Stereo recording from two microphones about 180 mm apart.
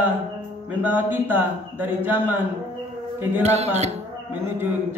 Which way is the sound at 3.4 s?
40° right (ahead or behind).